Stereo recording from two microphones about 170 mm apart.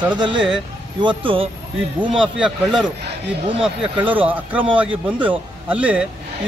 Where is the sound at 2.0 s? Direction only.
5° right (ahead or behind).